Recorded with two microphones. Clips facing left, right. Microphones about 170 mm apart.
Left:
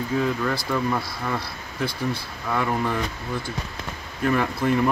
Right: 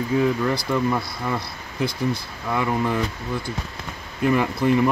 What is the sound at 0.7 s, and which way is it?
Speech, 20° right (ahead or behind).